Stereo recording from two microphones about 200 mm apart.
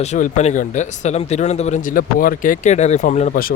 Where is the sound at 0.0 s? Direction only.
35° left (ahead or behind).